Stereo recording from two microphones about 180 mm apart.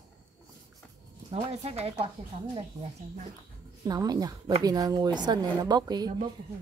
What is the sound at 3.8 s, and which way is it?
Speech, 20° right (ahead or behind).